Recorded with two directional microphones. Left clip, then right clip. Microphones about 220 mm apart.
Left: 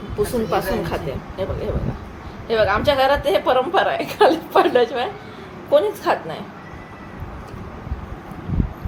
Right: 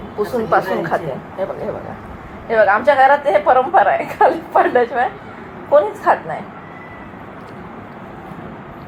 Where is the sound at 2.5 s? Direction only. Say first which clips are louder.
Right 5 dB; 20° left (ahead or behind).